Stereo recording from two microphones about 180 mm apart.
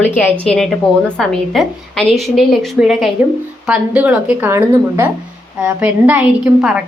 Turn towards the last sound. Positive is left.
turn(degrees=-10)  # may be behind; listen again after turning